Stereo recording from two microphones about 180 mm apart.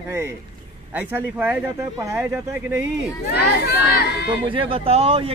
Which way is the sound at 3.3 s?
60° left (ahead or behind).